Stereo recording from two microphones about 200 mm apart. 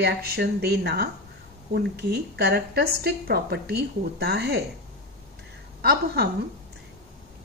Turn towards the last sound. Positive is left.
turn(degrees=-50)  # may be behind; listen again after turning